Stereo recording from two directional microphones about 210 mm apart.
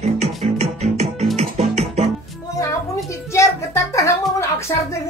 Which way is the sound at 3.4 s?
15° left (ahead or behind).